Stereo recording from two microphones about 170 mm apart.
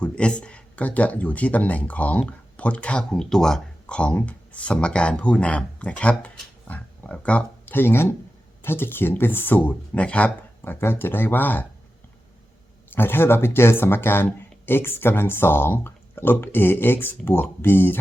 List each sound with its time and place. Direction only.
0.0 s speech: 5° left (ahead or behind)
12.9 s speech: 15° left (ahead or behind)